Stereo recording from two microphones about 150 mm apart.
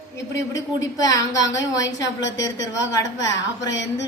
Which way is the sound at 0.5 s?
20° left (ahead or behind).